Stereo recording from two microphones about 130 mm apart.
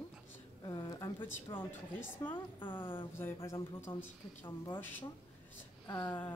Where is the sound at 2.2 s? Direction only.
40° left (ahead or behind).